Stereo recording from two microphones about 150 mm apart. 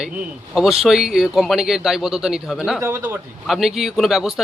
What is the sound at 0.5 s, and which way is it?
A man's voice, 5° right (ahead or behind).